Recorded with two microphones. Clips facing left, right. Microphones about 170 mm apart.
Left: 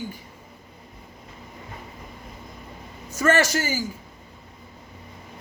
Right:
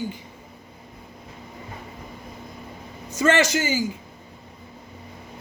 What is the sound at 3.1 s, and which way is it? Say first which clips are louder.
Speech: right 1 dB; 20° right (ahead or behind).